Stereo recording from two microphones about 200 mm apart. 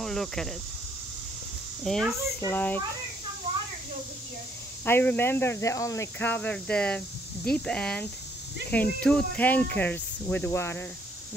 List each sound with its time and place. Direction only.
0.0 s speech: centre (ahead or behind)
1.9 s speech: centre (ahead or behind)
3.5 s a sound: 30° right (ahead or behind)
4.8 s speech: 10° left (ahead or behind)